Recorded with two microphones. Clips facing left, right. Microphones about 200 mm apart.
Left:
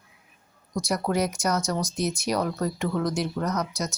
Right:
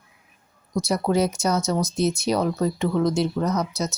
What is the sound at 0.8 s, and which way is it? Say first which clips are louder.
Speech: right 4 dB; 25° right (ahead or behind).